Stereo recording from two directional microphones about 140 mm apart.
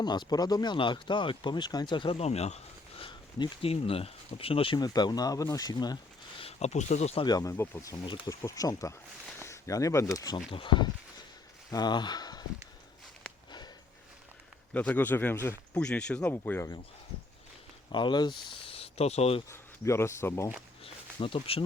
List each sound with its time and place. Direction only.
0.0 s speech: 30° left (ahead or behind); by 2.6 s 50° left (ahead or behind)
3.0 s a sound: 35° left (ahead or behind)
3.7 s speech: 45° left (ahead or behind)
4.8 s speech: 30° left (ahead or behind)
6.4 s speech: 50° left (ahead or behind)
7.3 s speech: 25° left (ahead or behind)
7.5 s speech: 15° left (ahead or behind)
8.0 s speech: 35° left (ahead or behind)
10.5 s speech: 35° left (ahead or behind)
14.7 s speech: 10° left (ahead or behind)
17.9 s speech: 35° left (ahead or behind); by 19.4 s 50° left (ahead or behind)
19.5 s speech: 20° left (ahead or behind)
20.8 s bee: 40° left (ahead or behind)